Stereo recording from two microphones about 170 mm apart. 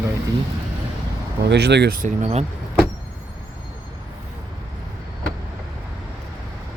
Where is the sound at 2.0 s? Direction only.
40° right (ahead or behind).